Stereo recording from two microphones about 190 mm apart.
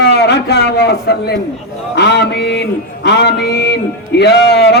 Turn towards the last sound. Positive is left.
turn(degrees=65)  # may be behind; listen again after turning